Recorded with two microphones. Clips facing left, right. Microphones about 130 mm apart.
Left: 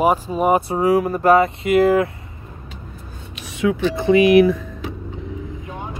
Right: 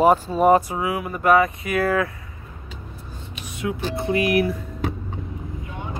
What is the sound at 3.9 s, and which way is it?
Speech, 90° left.